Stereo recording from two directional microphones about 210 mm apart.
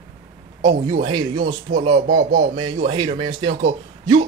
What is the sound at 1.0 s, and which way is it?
A man's voice, 20° right (ahead or behind).